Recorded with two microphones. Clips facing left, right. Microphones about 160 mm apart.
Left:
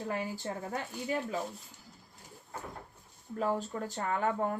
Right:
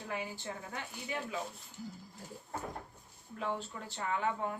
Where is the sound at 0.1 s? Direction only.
40° left (ahead or behind).